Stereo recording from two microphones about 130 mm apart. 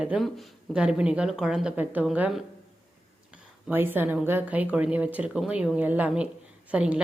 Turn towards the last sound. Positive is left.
turn(degrees=-10)  # may be behind; listen again after turning